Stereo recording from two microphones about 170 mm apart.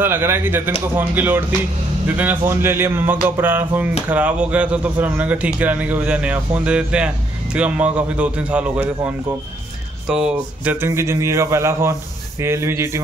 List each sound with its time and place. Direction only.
0.0 s speech: 15° right (ahead or behind)